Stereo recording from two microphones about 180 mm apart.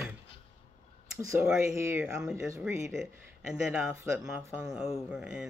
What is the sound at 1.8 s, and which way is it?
Speech, 10° right (ahead or behind).